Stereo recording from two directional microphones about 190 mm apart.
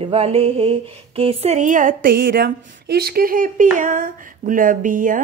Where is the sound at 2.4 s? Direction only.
65° right (ahead or behind); by 5.1 s 45° right (ahead or behind).